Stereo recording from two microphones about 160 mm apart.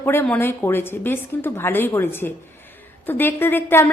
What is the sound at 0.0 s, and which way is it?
A woman's voice, 10° left (ahead or behind).